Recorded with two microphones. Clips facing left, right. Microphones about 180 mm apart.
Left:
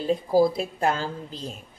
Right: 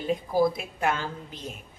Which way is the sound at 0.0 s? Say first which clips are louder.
Left 4 dB; 35° left (ahead or behind).